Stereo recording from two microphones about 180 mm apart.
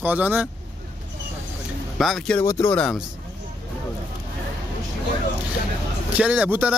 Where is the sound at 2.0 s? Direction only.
Centre (ahead or behind).